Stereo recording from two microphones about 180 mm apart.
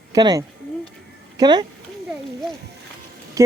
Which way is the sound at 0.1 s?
20° right (ahead or behind).